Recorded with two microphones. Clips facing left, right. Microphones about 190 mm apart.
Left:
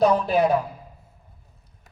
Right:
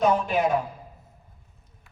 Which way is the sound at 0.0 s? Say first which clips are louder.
Left 3 dB; 35° left (ahead or behind).